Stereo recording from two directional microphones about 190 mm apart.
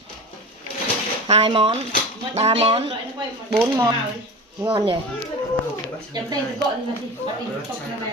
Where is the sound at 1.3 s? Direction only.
30° right (ahead or behind).